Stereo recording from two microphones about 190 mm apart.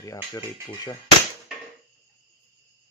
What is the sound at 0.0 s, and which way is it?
Speech, 15° left (ahead or behind).